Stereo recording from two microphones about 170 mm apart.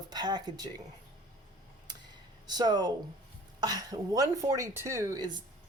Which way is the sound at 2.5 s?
25° right (ahead or behind).